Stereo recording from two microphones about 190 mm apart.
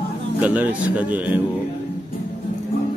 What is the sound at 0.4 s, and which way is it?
Speech, 10° right (ahead or behind).